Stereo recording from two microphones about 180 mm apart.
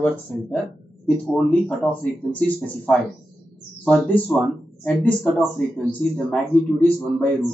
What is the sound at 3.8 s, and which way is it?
Speech, 5° left (ahead or behind).